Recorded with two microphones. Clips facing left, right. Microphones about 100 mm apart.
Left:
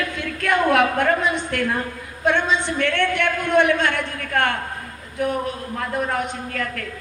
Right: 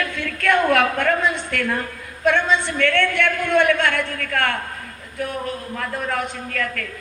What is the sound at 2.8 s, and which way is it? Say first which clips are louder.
A man's voice: right 2 dB; 15° left (ahead or behind).